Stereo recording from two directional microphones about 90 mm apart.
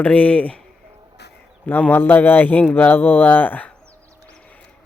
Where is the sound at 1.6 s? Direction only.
20° left (ahead or behind).